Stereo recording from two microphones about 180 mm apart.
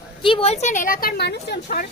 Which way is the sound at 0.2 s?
30° left (ahead or behind).